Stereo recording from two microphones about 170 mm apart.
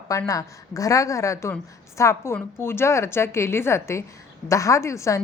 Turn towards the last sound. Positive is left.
turn(degrees=15)  # may be behind; listen again after turning